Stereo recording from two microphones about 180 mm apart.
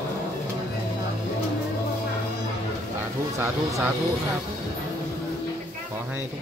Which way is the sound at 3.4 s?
15° right (ahead or behind).